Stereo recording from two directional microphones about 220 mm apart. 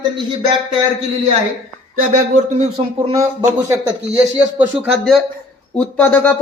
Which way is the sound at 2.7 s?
25° right (ahead or behind).